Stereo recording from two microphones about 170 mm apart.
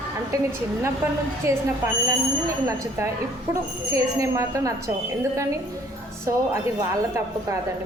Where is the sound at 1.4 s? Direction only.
15° right (ahead or behind).